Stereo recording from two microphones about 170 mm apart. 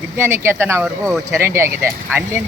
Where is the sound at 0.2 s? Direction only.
15° right (ahead or behind).